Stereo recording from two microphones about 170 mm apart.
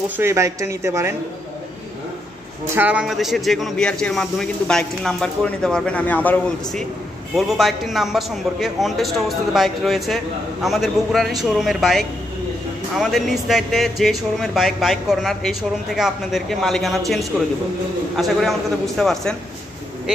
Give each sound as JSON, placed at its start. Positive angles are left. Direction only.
{"t": 0.2, "sound": "speech", "side_deg": -15}
{"t": 2.7, "sound": "a man's voice", "side_deg": -10}